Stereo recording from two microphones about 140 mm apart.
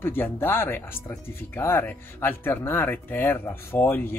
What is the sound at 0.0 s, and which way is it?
Speech, 15° left (ahead or behind).